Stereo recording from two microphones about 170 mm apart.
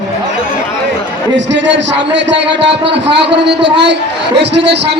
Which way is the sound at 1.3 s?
90° right.